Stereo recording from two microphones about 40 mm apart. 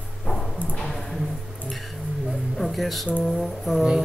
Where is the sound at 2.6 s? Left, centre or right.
Centre.